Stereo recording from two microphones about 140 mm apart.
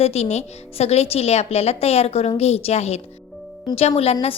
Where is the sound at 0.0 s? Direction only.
50° left (ahead or behind).